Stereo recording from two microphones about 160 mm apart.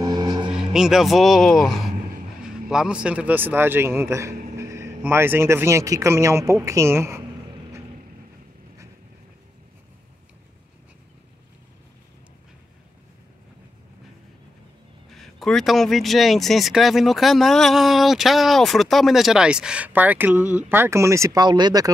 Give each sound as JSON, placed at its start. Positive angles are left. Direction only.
{"t": 0.0, "sound": "music", "side_deg": -25}
{"t": 0.5, "sound": "a man's voice", "side_deg": -5}
{"t": 4.6, "sound": "vehicle", "side_deg": -20}
{"t": 5.0, "sound": "a man's voice", "side_deg": -15}
{"t": 15.0, "sound": "speech", "side_deg": 0}